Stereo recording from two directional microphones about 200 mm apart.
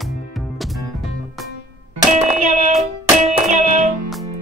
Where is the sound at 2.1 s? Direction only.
35° right (ahead or behind).